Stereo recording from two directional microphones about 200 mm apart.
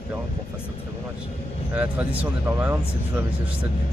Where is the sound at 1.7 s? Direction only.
5° right (ahead or behind).